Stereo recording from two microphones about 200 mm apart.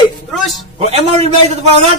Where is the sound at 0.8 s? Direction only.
30° right (ahead or behind).